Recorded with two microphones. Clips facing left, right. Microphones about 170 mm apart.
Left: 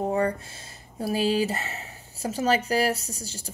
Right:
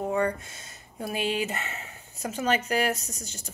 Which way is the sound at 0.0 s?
35° left (ahead or behind).